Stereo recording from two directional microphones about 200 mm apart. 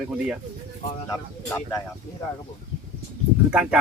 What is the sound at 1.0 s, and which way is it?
Speech, 15° left (ahead or behind).